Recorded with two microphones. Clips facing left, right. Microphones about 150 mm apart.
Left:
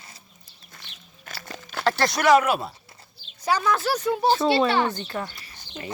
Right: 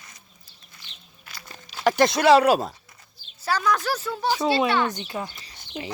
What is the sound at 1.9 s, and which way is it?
Speech, 20° right (ahead or behind).